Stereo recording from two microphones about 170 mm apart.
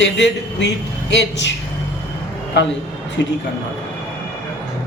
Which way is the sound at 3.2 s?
90° left.